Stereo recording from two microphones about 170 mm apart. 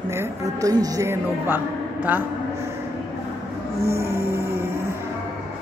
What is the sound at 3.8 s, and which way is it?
Music, 15° right (ahead or behind).